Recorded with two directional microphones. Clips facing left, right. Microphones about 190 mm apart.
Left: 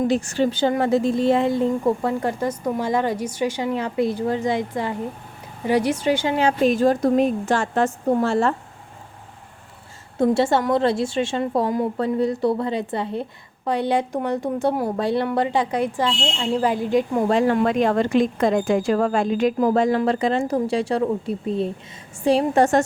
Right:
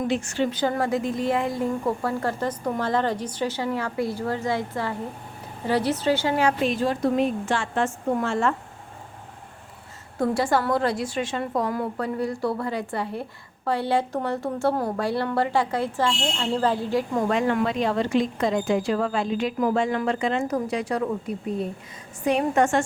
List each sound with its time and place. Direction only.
0.1 s a woman's voice: 35° left (ahead or behind); by 6.5 s 20° left (ahead or behind)
6.6 s a woman's voice: 45° left (ahead or behind)
10.2 s a woman's voice: 25° left (ahead or behind)
17.2 s a woman's voice: 30° left (ahead or behind)
17.6 s a woman's voice: 50° left (ahead or behind); by 22.8 s 35° left (ahead or behind)